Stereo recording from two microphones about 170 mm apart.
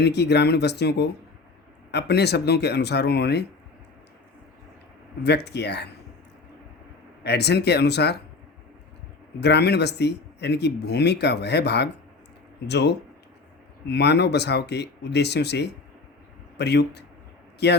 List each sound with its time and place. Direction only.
0.0 s speech: 75° left (ahead or behind)
5.2 s speech: 75° left (ahead or behind)
7.3 s speech: 75° left (ahead or behind)
9.4 s speech: 75° left (ahead or behind)